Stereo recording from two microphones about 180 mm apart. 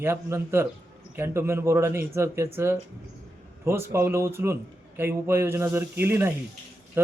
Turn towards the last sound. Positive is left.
turn(degrees=-10)  # may be behind; listen again after turning